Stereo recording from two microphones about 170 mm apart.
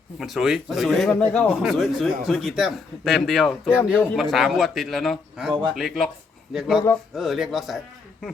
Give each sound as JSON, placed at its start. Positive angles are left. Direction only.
{"t": 0.2, "sound": "a man's voice", "side_deg": 0}